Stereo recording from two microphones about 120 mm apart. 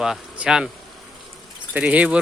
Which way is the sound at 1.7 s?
10° right (ahead or behind).